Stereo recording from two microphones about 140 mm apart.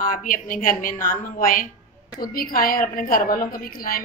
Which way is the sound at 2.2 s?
90° left.